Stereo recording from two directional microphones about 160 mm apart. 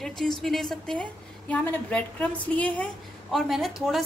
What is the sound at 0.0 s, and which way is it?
A woman's voice, centre (ahead or behind).